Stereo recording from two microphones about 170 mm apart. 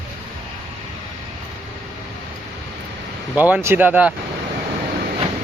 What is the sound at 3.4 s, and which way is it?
Speech, 10° right (ahead or behind).